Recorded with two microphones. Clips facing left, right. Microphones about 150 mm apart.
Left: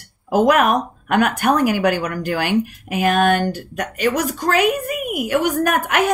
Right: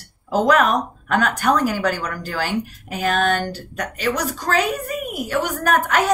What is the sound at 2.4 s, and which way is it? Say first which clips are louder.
Speech: left 2 dB; 15° left (ahead or behind).